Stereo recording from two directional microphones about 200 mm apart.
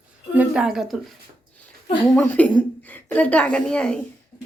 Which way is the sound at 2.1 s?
10° left (ahead or behind).